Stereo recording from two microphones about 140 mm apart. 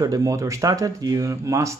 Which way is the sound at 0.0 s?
25° right (ahead or behind).